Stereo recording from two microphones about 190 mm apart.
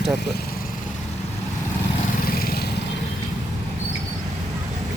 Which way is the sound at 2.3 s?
55° left (ahead or behind).